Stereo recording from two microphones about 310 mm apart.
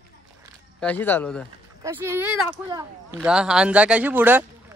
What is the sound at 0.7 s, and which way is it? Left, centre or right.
Speech, centre.